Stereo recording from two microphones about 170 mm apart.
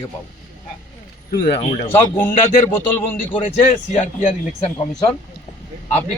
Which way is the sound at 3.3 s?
40° left (ahead or behind).